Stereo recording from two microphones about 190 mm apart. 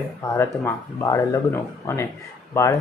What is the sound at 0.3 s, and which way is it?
Speech, 15° left (ahead or behind).